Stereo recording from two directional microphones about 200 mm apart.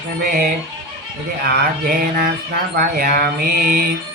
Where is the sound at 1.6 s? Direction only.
50° right (ahead or behind).